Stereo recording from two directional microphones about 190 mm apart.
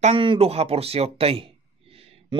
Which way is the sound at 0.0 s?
30° right (ahead or behind).